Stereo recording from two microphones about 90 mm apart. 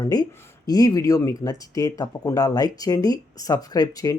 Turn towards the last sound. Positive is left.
turn(degrees=45)  # may be behind; listen again after turning